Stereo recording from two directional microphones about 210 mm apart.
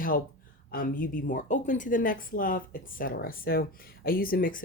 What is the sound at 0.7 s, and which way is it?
Speech, 40° left (ahead or behind).